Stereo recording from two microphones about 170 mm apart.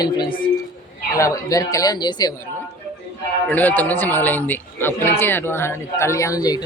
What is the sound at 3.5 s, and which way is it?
A man's voice, 10° left (ahead or behind).